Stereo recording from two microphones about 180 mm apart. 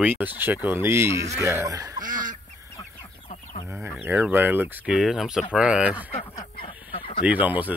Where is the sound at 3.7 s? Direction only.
10° right (ahead or behind).